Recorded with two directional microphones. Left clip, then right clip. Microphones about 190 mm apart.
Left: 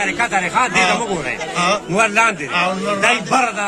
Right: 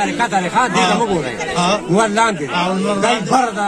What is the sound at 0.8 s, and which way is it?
Speech, 10° left (ahead or behind).